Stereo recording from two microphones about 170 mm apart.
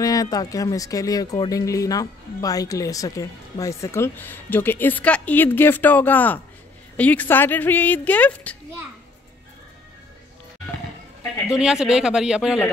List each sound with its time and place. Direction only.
0.0 s speech: 20° left (ahead or behind)
11.5 s speech: 5° right (ahead or behind)